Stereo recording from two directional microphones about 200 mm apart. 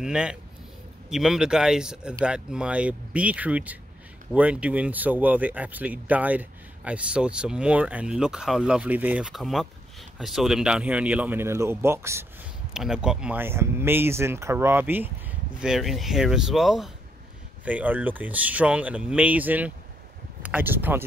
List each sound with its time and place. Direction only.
0.0 s speech: 5° right (ahead or behind)